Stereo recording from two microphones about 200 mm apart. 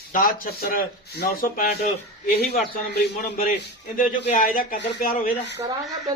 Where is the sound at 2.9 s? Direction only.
45° left (ahead or behind).